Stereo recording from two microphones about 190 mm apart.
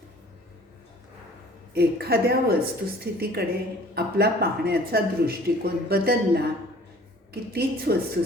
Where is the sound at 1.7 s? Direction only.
55° right (ahead or behind).